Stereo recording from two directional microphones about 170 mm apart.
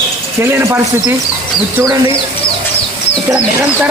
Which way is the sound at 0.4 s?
15° right (ahead or behind).